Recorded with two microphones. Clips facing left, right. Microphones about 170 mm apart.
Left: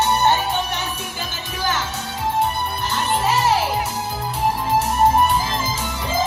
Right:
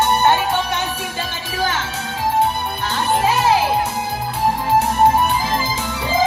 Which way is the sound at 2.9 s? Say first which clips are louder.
Right 4 dB; 65° right (ahead or behind).